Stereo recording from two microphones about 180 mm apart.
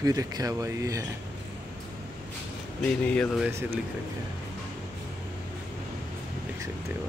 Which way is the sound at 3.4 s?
10° right (ahead or behind).